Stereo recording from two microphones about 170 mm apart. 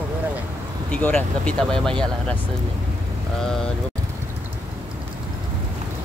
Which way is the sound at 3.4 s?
5° left (ahead or behind).